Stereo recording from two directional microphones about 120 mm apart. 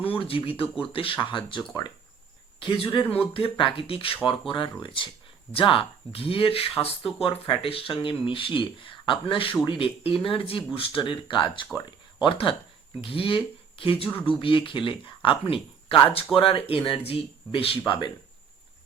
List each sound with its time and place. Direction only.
0.0 s speech: 50° left (ahead or behind)
3.0 s speech: 15° left (ahead or behind)
3.3 s speech: 45° left (ahead or behind)